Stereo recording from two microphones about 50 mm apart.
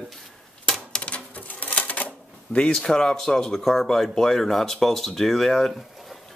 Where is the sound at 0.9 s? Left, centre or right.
Left.